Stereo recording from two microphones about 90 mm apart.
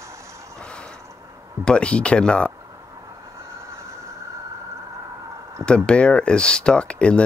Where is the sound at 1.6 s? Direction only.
10° left (ahead or behind).